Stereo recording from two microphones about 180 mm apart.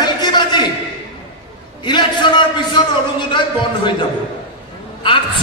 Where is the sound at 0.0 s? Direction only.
25° left (ahead or behind).